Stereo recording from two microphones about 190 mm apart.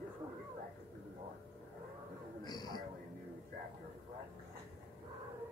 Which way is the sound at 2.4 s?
20° left (ahead or behind).